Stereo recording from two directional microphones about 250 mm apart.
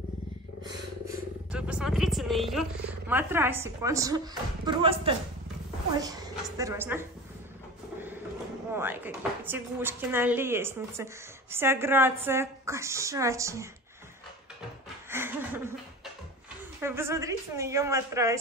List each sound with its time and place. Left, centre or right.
1.5 s a woman's voice: centre
8.7 s speech: centre
15.0 s laughter: centre
16.8 s speech: centre